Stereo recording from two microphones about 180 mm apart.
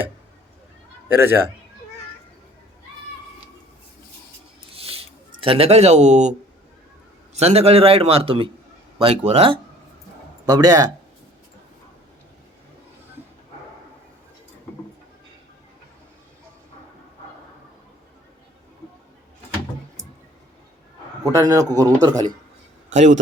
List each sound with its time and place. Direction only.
1.0 s speech: 10° right (ahead or behind)
4.7 s a sound: 35° right (ahead or behind)
7.3 s a man's voice: 35° right (ahead or behind)
10.4 s speech: 20° right (ahead or behind)
21.3 s speech: 20° right (ahead or behind)
23.0 s a man's voice: 45° right (ahead or behind)